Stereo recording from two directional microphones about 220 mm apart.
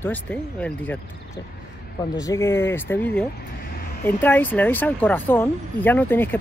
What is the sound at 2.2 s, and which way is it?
Speech, 10° left (ahead or behind).